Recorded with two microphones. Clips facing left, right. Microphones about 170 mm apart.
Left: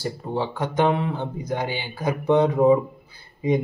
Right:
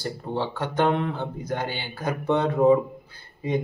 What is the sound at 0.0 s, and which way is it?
Speech, 10° left (ahead or behind).